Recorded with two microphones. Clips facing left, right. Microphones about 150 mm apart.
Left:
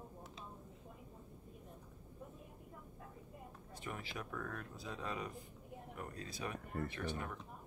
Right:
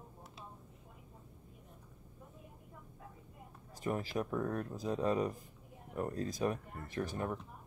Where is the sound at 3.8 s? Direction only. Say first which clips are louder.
Right 11 dB; 40° right (ahead or behind).